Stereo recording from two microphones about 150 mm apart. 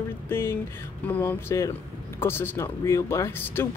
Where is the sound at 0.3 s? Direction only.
15° left (ahead or behind).